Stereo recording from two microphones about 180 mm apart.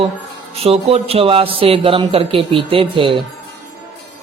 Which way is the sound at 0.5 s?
35° right (ahead or behind).